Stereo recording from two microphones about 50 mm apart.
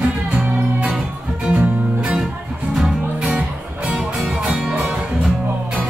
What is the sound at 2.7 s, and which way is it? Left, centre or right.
Music, centre.